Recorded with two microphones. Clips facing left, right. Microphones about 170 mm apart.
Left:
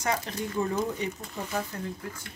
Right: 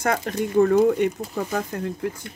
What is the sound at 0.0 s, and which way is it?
Speech, 60° right (ahead or behind).